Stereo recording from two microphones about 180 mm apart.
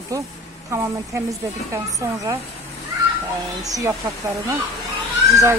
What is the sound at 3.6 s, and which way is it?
Speech, 20° right (ahead or behind).